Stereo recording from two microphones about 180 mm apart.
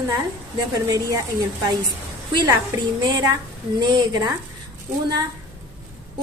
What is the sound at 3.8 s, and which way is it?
Speech, 25° right (ahead or behind).